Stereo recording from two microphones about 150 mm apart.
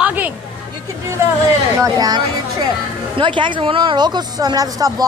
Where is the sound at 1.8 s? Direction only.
25° right (ahead or behind).